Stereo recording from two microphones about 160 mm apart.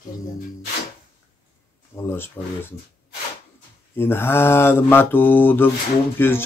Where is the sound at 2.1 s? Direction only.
15° left (ahead or behind).